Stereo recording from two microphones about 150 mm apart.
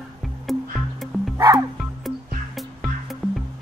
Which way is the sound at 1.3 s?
20° right (ahead or behind).